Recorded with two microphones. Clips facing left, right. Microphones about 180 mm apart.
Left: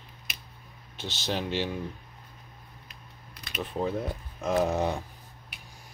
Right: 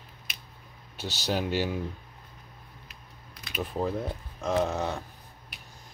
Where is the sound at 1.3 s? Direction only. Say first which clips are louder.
Right 2 dB; 5° right (ahead or behind).